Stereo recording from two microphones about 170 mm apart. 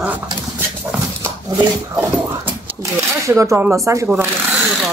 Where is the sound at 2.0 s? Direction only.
10° right (ahead or behind).